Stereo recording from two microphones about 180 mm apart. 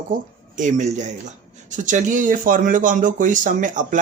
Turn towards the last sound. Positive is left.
turn(degrees=-45)  # may be behind; listen again after turning